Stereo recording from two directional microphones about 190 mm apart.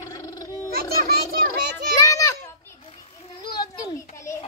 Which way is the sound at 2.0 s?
15° left (ahead or behind).